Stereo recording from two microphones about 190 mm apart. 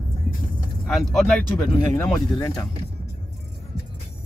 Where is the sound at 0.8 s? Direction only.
Centre (ahead or behind).